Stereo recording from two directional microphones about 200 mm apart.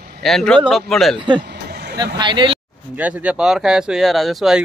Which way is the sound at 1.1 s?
25° right (ahead or behind).